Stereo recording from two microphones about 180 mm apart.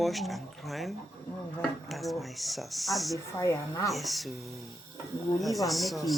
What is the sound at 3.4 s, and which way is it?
Speech, 15° left (ahead or behind).